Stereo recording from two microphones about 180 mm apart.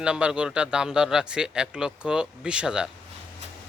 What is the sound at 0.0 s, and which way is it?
Speech, 5° right (ahead or behind).